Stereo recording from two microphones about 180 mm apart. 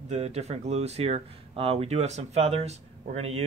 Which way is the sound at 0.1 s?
35° right (ahead or behind).